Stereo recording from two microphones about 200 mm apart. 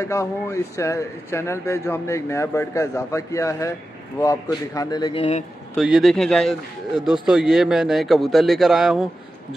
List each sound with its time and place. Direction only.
0.0 s a man's voice: 15° left (ahead or behind)
5.8 s a man's voice: centre (ahead or behind)